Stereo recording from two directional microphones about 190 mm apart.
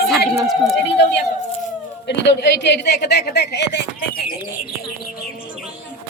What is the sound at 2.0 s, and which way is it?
A woman's voice, 65° left (ahead or behind).